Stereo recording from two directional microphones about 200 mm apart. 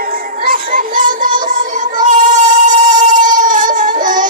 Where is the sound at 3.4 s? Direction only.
40° right (ahead or behind).